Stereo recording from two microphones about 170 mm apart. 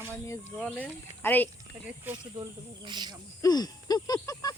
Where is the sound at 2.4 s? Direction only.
25° right (ahead or behind).